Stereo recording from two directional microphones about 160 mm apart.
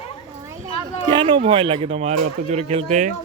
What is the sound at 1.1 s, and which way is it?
Speech, 30° right (ahead or behind).